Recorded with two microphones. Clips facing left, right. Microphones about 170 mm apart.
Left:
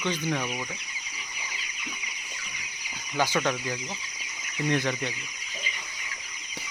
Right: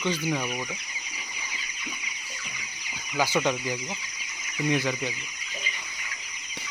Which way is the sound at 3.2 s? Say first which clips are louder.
Right 1 dB; 10° right (ahead or behind).